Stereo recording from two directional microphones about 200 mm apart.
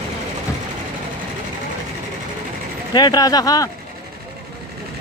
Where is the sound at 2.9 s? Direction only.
20° left (ahead or behind).